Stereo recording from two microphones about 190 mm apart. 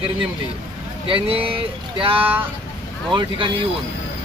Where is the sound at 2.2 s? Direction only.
10° right (ahead or behind).